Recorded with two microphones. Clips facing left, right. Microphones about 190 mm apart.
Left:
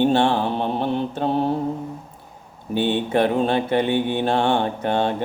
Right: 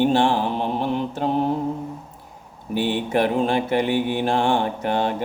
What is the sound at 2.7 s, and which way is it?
Mantra, 25° left (ahead or behind).